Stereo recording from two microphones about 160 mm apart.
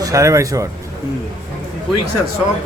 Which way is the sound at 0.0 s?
20° right (ahead or behind).